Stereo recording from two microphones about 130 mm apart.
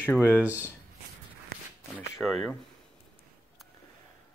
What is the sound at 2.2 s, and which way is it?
Speech, centre (ahead or behind).